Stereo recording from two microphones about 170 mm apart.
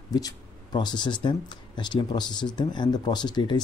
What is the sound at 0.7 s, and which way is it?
Speech, 25° left (ahead or behind).